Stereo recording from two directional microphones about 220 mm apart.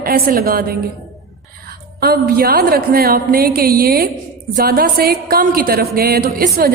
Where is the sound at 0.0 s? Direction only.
40° right (ahead or behind).